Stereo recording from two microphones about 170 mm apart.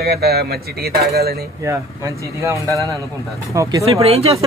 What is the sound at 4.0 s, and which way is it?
Speech, 35° right (ahead or behind).